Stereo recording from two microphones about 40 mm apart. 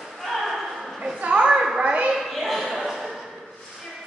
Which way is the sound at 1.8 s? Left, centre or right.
Right.